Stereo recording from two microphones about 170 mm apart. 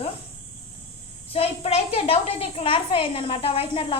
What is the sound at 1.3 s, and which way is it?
A woman's voice, 35° left (ahead or behind).